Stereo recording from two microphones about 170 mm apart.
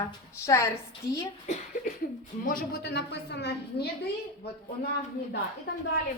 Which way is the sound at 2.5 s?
75° left (ahead or behind).